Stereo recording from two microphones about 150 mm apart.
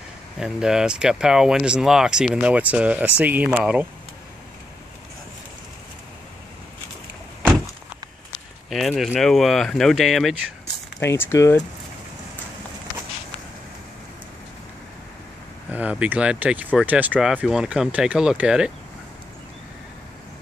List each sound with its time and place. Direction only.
0.4 s speech: 5° right (ahead or behind)
8.6 s speech: centre (ahead or behind)
11.0 s speech: 15° left (ahead or behind)
15.7 s speech: 10° right (ahead or behind)